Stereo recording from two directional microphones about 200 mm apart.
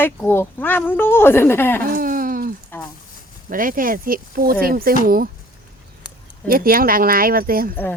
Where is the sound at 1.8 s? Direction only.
45° right (ahead or behind).